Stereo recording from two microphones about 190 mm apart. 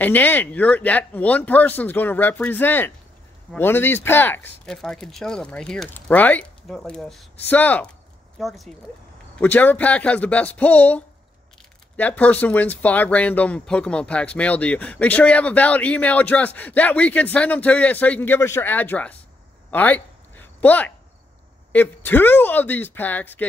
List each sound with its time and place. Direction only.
0.0 s speech: 10° left (ahead or behind)
12.0 s speech: 10° left (ahead or behind)
19.7 s a sound: 10° left (ahead or behind)
21.7 s speech: 10° left (ahead or behind)